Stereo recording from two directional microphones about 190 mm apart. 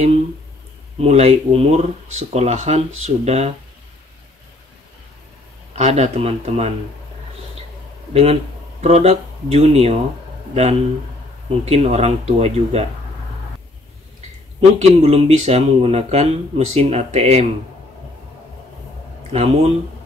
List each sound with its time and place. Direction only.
0.9 s speech: 35° right (ahead or behind)
5.8 s speech: 35° right (ahead or behind)
8.1 s speech: 30° right (ahead or behind)
14.6 s speech: 30° right (ahead or behind)
19.3 s speech: 35° right (ahead or behind)